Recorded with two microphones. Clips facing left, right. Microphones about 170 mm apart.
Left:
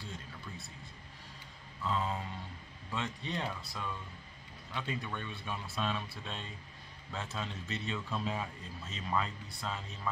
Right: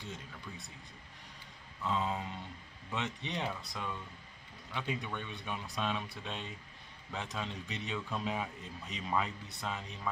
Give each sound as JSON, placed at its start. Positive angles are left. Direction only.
{"t": 0.0, "sound": "a man's voice", "side_deg": -20}
{"t": 1.8, "sound": "a man's voice", "side_deg": -15}